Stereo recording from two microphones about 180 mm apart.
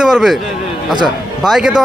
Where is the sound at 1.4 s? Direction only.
5° right (ahead or behind).